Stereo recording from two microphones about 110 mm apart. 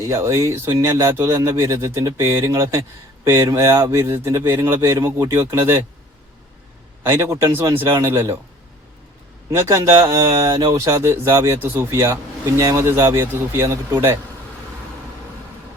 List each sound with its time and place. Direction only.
0.0 s speech: 25° right (ahead or behind)
7.0 s speech: 25° right (ahead or behind)
9.5 s speech: 25° right (ahead or behind)